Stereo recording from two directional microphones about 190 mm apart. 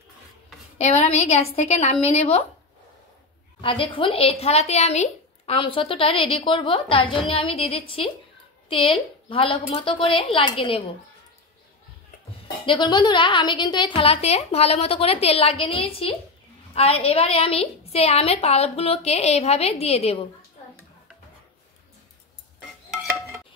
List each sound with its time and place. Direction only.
0.7 s a woman's voice: 35° left (ahead or behind)
3.6 s a woman's voice: 25° left (ahead or behind)
12.6 s a woman's voice: 25° left (ahead or behind)